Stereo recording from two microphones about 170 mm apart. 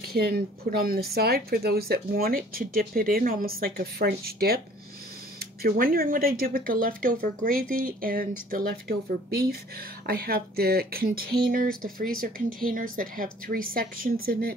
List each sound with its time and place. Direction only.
0.1 s speech: 60° right (ahead or behind)